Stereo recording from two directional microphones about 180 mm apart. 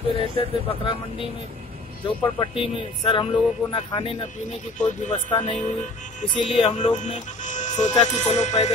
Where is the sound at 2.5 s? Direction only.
30° left (ahead or behind).